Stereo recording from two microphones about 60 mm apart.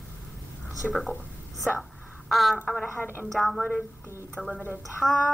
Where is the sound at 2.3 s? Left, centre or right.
Centre.